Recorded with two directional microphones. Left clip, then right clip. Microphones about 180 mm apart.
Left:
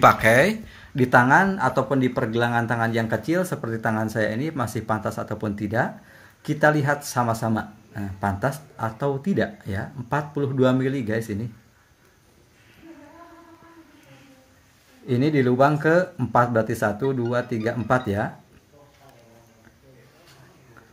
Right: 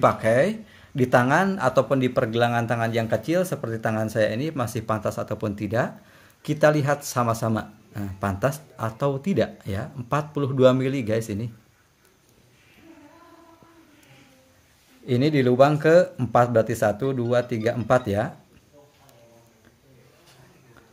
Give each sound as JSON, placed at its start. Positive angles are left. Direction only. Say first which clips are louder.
{"t": 0.0, "sound": "speech", "louder": "left 4 dB", "side_deg": -5}
{"t": 15.0, "sound": "speech", "louder": "even", "side_deg": -25}